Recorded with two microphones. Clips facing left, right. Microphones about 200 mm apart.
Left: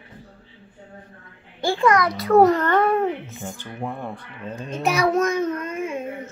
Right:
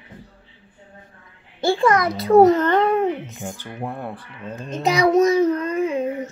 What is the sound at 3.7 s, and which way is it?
A child's voice, 10° right (ahead or behind).